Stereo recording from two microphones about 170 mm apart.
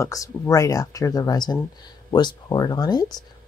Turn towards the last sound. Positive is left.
turn(degrees=25)  # may be behind; listen again after turning